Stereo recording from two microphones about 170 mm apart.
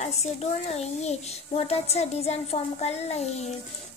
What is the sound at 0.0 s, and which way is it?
A child's voice, 40° left (ahead or behind).